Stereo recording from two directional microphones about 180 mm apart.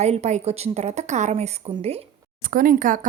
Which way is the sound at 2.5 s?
50° right (ahead or behind).